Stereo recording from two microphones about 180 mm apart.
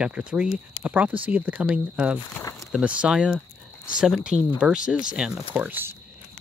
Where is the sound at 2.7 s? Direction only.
5° right (ahead or behind).